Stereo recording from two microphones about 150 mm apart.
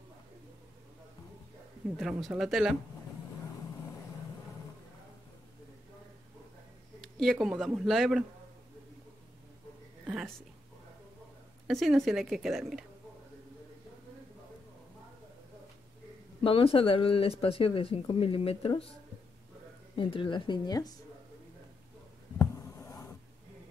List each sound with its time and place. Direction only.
2.0 s speech: centre (ahead or behind)
7.0 s speech: centre (ahead or behind)
11.6 s speech: centre (ahead or behind)
16.4 s speech: 35° left (ahead or behind)
20.0 s speech: 35° left (ahead or behind)
22.4 s a sound: 20° left (ahead or behind)